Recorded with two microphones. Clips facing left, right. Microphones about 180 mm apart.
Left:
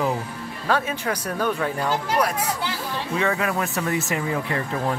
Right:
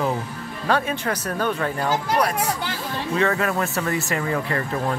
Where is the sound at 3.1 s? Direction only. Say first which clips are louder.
Right 2 dB; 10° left (ahead or behind).